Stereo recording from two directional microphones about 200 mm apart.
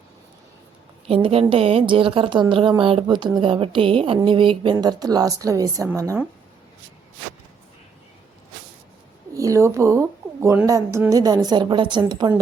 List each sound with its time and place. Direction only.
1.0 s a woman's voice: 30° right (ahead or behind)
9.3 s speech: 15° right (ahead or behind)